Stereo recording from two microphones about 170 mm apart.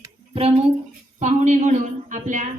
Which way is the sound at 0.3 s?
35° right (ahead or behind).